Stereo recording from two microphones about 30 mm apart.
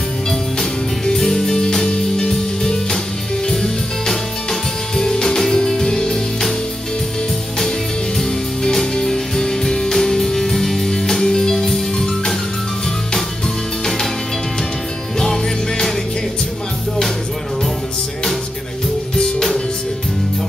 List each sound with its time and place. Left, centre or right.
1.0 s music: centre
3.6 s music: centre
9.0 s music: centre